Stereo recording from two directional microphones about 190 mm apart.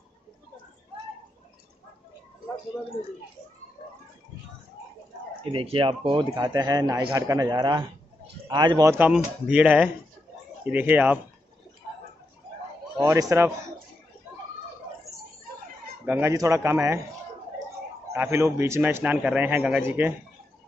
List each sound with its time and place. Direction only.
5.4 s a man's voice: 30° right (ahead or behind); by 11.1 s 10° right (ahead or behind)
12.9 s a man's voice: 15° right (ahead or behind)
16.1 s a man's voice: 15° right (ahead or behind)
18.1 s a man's voice: 15° right (ahead or behind)